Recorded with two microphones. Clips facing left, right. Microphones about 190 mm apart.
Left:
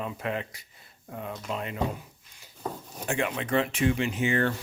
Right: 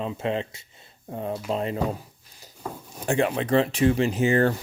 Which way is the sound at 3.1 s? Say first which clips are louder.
Right 6 dB; 35° right (ahead or behind).